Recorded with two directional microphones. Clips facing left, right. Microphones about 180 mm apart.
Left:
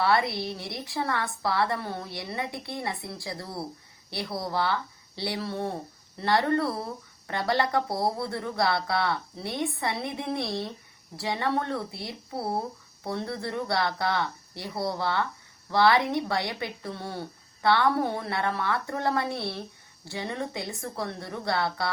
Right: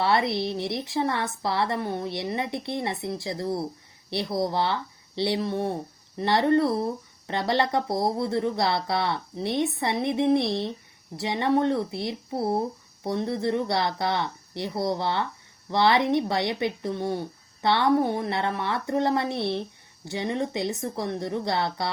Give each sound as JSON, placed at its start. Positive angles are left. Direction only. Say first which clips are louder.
{"t": 0.0, "sound": "speech", "louder": "right 2 dB", "side_deg": -25}